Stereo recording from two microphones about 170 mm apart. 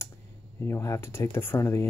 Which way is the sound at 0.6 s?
15° left (ahead or behind).